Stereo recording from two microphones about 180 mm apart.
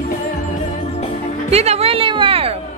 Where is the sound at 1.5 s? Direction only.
35° right (ahead or behind).